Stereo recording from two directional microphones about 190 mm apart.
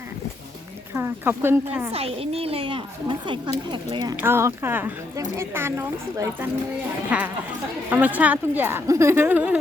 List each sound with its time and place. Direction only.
0.9 s speech: 10° right (ahead or behind)
1.9 s a woman's voice: 30° right (ahead or behind)
4.2 s speech: 15° right (ahead or behind)